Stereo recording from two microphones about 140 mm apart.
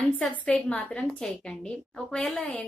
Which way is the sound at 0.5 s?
10° left (ahead or behind).